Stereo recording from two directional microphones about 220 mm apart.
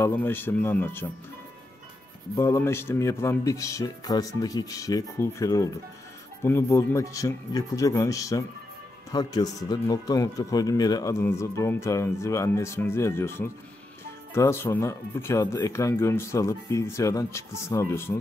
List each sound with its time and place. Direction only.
0.0 s speech: 10° left (ahead or behind)
2.3 s speech: 10° left (ahead or behind)